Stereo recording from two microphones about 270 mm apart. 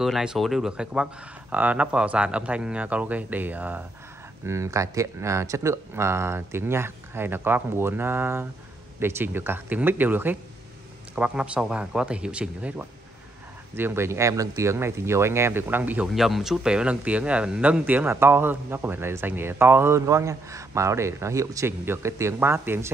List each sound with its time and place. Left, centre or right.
0.0 s speech: centre